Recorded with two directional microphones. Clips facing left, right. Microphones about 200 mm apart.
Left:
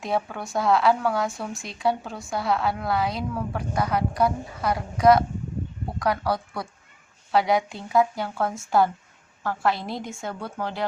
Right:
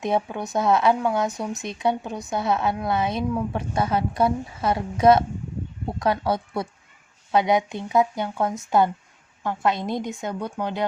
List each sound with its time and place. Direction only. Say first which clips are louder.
0.0 s speech: right 3 dB; 20° right (ahead or behind)